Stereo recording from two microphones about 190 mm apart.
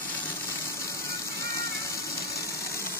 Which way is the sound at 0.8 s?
15° left (ahead or behind).